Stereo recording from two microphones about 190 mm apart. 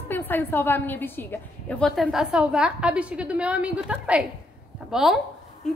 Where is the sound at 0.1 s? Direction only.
10° left (ahead or behind).